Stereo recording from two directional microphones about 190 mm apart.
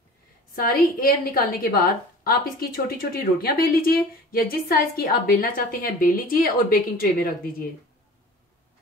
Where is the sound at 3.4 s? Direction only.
50° left (ahead or behind).